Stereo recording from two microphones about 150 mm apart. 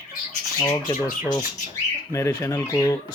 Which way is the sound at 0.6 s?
25° left (ahead or behind).